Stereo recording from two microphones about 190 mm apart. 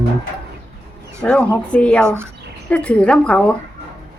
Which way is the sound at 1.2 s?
5° left (ahead or behind).